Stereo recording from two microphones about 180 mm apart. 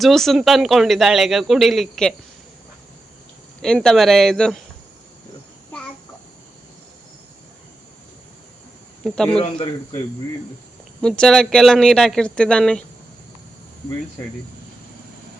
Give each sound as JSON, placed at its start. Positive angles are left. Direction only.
{"t": 0.0, "sound": "speech", "side_deg": 0}
{"t": 3.6, "sound": "speech", "side_deg": 5}
{"t": 9.0, "sound": "speech", "side_deg": 5}
{"t": 11.0, "sound": "speech", "side_deg": 5}